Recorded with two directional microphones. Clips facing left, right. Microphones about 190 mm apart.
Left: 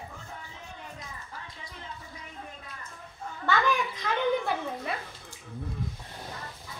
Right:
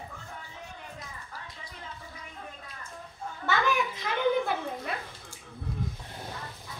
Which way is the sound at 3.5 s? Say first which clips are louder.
Left 1 dB; 5° right (ahead or behind).